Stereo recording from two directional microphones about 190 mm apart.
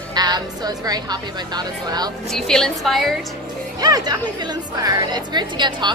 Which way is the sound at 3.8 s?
20° right (ahead or behind).